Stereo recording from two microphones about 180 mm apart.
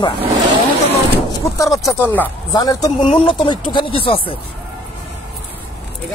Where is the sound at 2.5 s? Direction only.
20° left (ahead or behind).